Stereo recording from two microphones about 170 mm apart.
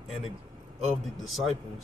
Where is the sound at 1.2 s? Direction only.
Centre (ahead or behind).